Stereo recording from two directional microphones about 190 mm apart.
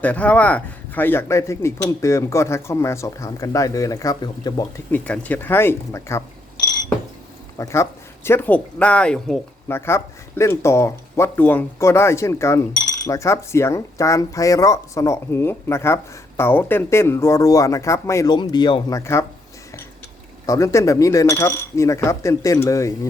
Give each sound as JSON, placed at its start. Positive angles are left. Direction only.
{"t": 0.0, "sound": "speech", "side_deg": 10}
{"t": 4.9, "sound": "speech", "side_deg": 10}
{"t": 7.6, "sound": "speech", "side_deg": 15}
{"t": 20.5, "sound": "speech", "side_deg": 15}